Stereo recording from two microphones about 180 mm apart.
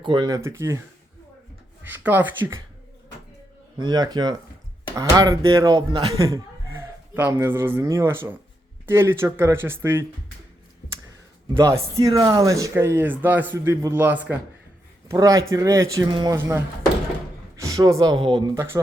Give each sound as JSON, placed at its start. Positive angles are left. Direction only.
{"t": 0.0, "sound": "speech", "side_deg": -25}
{"t": 1.8, "sound": "speech", "side_deg": -10}
{"t": 3.8, "sound": "speech", "side_deg": -25}
{"t": 11.5, "sound": "speech", "side_deg": -20}